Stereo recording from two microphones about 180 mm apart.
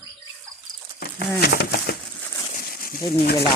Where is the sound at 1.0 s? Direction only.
60° left (ahead or behind).